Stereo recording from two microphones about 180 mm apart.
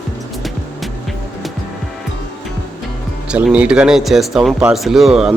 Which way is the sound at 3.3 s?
5° right (ahead or behind).